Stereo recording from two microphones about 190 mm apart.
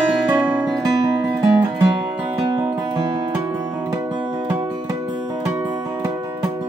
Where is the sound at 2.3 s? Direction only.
15° right (ahead or behind).